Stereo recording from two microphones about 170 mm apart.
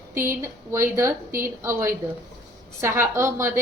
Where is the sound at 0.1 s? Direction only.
15° right (ahead or behind).